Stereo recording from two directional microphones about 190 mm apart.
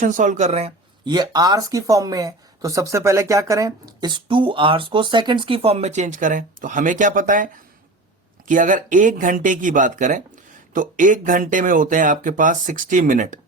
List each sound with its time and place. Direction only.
0.0 s speech: 40° right (ahead or behind)
1.1 s speech: 20° right (ahead or behind); by 13.4 s 45° right (ahead or behind)